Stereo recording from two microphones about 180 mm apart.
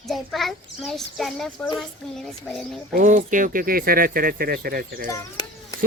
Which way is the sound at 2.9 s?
45° right (ahead or behind).